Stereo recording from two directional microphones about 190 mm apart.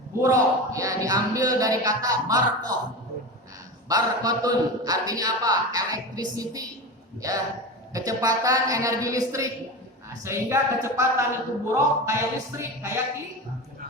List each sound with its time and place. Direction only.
0.2 s a man's voice: 15° right (ahead or behind)
3.8 s a man's voice: 20° right (ahead or behind)